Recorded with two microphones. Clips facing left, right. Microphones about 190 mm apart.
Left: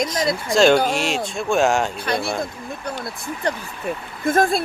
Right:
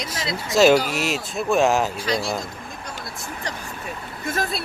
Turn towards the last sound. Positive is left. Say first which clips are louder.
# left 8 dB
turn(degrees=50)  # may be behind; listen again after turning